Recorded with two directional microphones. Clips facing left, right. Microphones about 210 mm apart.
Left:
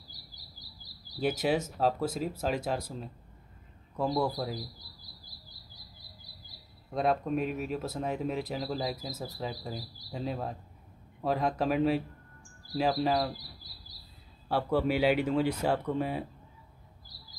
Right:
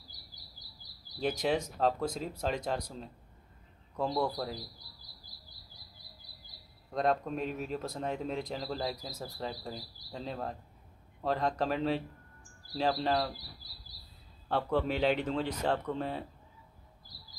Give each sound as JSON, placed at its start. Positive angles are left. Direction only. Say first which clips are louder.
{"t": 1.2, "sound": "a man's voice", "louder": "left 2 dB", "side_deg": 5}
{"t": 6.9, "sound": "speech", "louder": "left 2 dB", "side_deg": 5}
{"t": 14.5, "sound": "speech", "louder": "left 3 dB", "side_deg": 10}